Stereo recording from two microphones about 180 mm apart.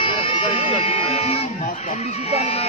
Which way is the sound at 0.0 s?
30° left (ahead or behind).